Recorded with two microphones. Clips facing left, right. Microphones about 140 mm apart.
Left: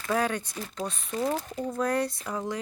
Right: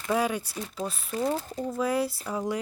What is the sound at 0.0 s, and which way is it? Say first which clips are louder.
Speech: right 1 dB; 10° right (ahead or behind).